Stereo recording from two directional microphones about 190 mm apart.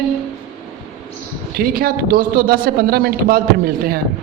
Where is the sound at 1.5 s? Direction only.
50° right (ahead or behind).